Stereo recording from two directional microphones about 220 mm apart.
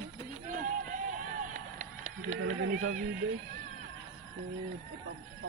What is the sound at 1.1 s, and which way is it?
Run, 35° right (ahead or behind).